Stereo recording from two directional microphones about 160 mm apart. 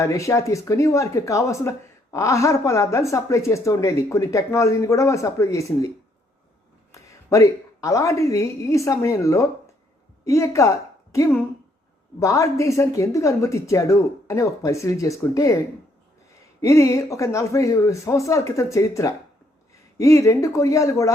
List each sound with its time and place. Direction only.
0.0 s speech: 20° left (ahead or behind)
6.9 s a woman's voice: 20° left (ahead or behind)
16.6 s speech: 20° left (ahead or behind)